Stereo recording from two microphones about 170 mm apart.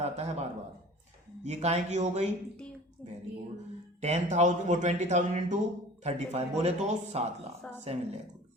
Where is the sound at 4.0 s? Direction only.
40° right (ahead or behind).